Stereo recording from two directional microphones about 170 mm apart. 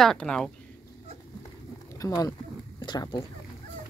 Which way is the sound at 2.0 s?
20° left (ahead or behind).